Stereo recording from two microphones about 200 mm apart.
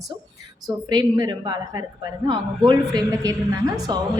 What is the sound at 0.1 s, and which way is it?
A woman's voice, 20° right (ahead or behind).